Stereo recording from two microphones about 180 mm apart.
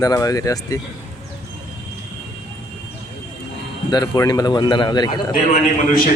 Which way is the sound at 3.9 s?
20° left (ahead or behind).